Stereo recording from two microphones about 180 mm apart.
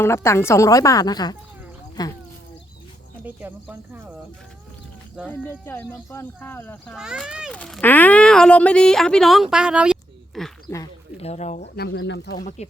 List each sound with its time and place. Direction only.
0.0 s a woman's voice: 15° left (ahead or behind)
3.2 s speech: 10° right (ahead or behind)
5.2 s a woman's voice: 10° left (ahead or behind)
6.9 s speech: 5° right (ahead or behind)
11.2 s speech: 35° left (ahead or behind)
11.8 s speech: 85° left
12.6 s speech: 35° left (ahead or behind)